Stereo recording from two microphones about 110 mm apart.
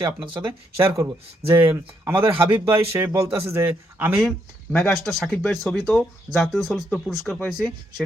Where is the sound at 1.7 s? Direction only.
20° right (ahead or behind).